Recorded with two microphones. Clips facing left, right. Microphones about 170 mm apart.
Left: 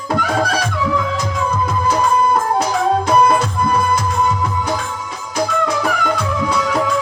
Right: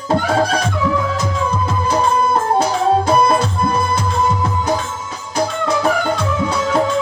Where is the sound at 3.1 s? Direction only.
30° right (ahead or behind).